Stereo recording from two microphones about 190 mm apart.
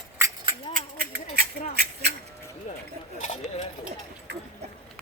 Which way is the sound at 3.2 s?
40° left (ahead or behind).